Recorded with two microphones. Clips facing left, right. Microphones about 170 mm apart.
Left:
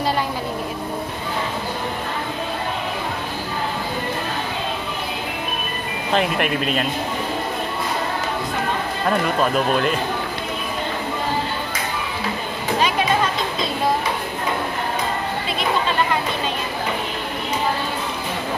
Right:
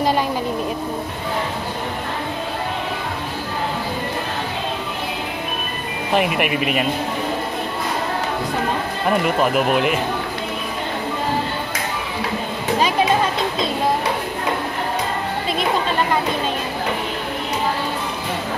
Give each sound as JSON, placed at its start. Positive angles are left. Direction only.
{"t": 6.1, "sound": "speech", "side_deg": -10}
{"t": 9.1, "sound": "speech", "side_deg": -15}